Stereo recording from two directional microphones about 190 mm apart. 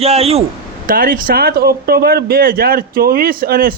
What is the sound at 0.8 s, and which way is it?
Speech, 50° right (ahead or behind).